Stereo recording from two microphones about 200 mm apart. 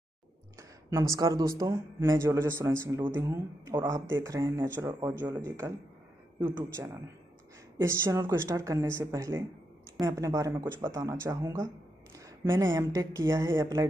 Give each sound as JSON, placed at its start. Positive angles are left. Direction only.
{"t": 0.6, "sound": "speech", "side_deg": -15}